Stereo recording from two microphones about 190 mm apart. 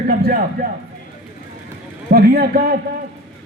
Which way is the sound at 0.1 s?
50° right (ahead or behind).